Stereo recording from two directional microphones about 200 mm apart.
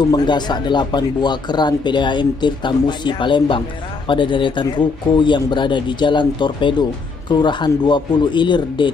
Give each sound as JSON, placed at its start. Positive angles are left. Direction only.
{"t": 0.1, "sound": "speech", "side_deg": 20}